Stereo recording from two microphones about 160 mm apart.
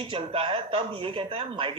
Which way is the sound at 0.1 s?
30° right (ahead or behind).